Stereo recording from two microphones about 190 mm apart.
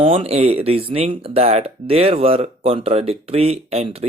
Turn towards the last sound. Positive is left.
turn(degrees=-30)  # may be behind; listen again after turning